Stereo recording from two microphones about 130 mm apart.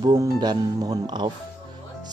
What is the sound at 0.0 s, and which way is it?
Speech, 30° right (ahead or behind).